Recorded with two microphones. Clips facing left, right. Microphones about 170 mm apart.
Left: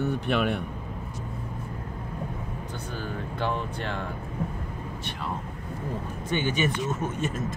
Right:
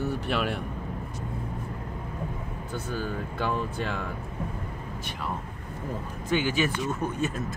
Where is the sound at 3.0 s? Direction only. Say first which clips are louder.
Left 1 dB; 10° right (ahead or behind).